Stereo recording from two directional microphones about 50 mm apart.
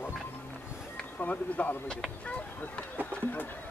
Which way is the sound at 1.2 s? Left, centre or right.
Left.